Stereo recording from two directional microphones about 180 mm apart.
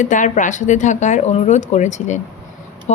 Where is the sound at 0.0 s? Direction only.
45° left (ahead or behind).